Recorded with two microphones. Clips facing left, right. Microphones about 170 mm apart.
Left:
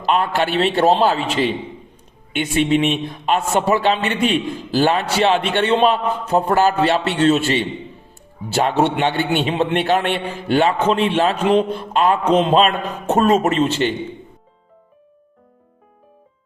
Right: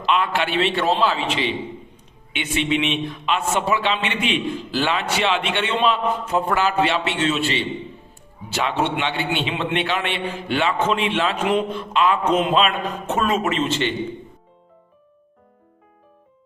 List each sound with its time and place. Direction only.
0.0 s a man's voice: 40° left (ahead or behind)